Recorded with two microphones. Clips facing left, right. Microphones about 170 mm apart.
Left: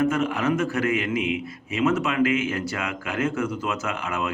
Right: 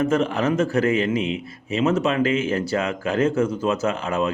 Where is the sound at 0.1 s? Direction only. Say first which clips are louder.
Right 3 dB; 30° right (ahead or behind).